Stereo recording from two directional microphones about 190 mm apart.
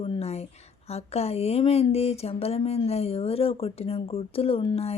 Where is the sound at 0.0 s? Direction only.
30° left (ahead or behind).